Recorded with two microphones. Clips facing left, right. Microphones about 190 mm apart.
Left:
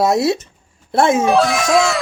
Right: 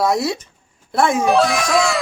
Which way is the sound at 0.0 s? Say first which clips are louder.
Left 3 dB; 25° left (ahead or behind).